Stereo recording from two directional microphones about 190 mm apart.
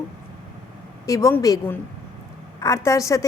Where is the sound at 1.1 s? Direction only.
15° left (ahead or behind).